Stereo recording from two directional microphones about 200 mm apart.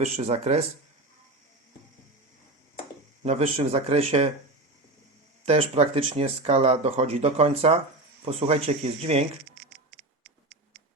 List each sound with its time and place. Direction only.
0.0 s speech: 35° right (ahead or behind)
3.2 s speech: 30° right (ahead or behind)
5.5 s speech: 30° right (ahead or behind)